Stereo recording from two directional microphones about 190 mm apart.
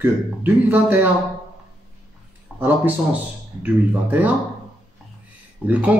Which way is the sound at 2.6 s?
10° right (ahead or behind).